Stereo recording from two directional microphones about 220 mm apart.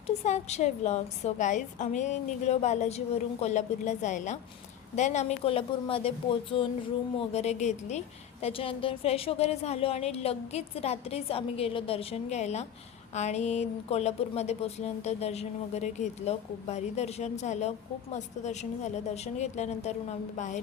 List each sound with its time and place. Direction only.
0.3 s a woman's voice: 30° left (ahead or behind)